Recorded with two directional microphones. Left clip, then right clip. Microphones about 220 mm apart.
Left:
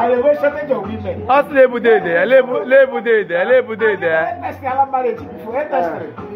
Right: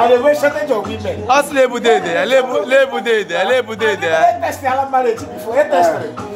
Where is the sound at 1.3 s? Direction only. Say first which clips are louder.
Left 1 dB; centre (ahead or behind).